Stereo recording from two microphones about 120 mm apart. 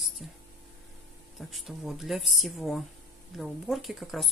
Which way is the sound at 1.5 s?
Centre (ahead or behind).